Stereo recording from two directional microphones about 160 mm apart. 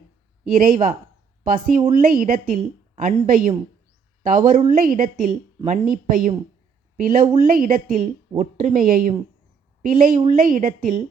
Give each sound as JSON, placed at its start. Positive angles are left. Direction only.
{"t": 0.4, "sound": "a woman's voice", "side_deg": -60}